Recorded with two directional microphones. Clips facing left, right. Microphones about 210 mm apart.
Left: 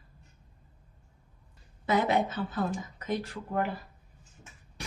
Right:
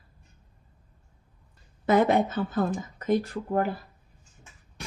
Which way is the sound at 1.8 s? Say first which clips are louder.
Right 5 dB; 50° right (ahead or behind).